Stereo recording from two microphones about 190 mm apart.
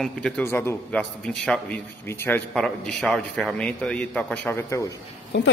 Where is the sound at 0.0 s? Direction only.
10° left (ahead or behind).